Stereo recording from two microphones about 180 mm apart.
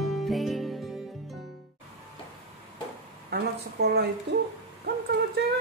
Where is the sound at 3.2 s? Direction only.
60° right (ahead or behind).